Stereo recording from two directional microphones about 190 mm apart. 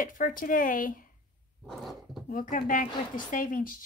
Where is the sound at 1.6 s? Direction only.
Centre (ahead or behind).